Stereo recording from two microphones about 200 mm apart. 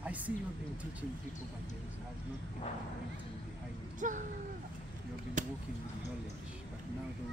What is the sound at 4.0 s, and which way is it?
Speech, 40° right (ahead or behind).